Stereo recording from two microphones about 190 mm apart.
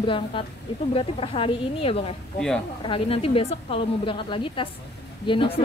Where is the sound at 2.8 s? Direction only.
30° left (ahead or behind).